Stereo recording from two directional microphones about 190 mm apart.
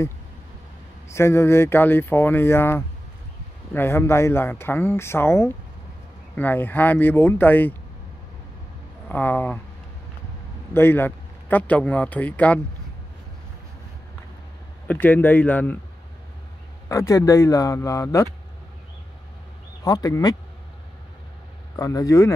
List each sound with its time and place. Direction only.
1.0 s speech: 15° left (ahead or behind)
9.1 s speech: 10° left (ahead or behind)
10.7 s speech: 10° left (ahead or behind)
14.9 s speech: 10° left (ahead or behind)
16.9 s speech: 15° left (ahead or behind)
19.8 s speech: 20° left (ahead or behind)
21.7 s speech: 15° left (ahead or behind)